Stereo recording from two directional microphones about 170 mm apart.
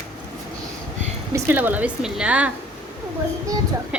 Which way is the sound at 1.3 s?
10° right (ahead or behind).